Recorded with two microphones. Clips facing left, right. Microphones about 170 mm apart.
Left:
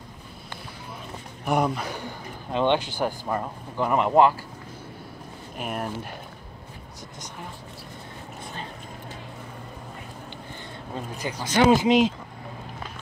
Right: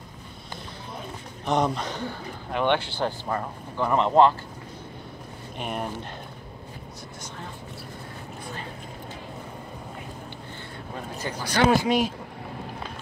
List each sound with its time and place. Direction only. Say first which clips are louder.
1.4 s a man's voice: even; 10° left (ahead or behind)
5.6 s speech: even; centre (ahead or behind)
11.1 s speech: left 2 dB; 15° left (ahead or behind)